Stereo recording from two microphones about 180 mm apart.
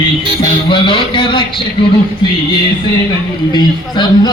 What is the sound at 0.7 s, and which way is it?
Singing, 30° left (ahead or behind).